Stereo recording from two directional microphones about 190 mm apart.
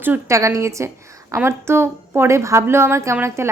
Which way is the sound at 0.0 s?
15° right (ahead or behind).